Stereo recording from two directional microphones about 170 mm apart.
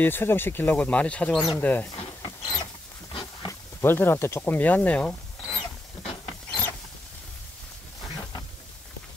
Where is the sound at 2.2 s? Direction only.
25° left (ahead or behind).